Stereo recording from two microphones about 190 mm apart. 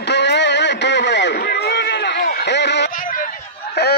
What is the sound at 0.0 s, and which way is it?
Music, 65° left (ahead or behind).